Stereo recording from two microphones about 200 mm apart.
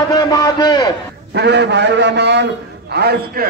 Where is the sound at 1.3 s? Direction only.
55° right (ahead or behind).